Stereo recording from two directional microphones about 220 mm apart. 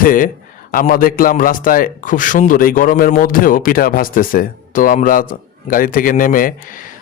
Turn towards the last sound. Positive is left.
turn(degrees=40)  # may be behind; listen again after turning